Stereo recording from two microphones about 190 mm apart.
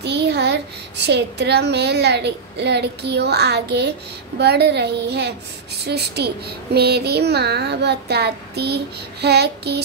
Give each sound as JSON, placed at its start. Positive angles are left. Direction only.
{"t": 0.0, "sound": "a child's voice", "side_deg": -60}